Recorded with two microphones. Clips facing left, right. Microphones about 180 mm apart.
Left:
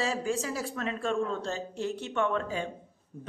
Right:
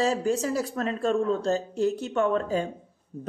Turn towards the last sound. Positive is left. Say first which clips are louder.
# right 6 dB
turn(degrees=-35)  # may be behind; listen again after turning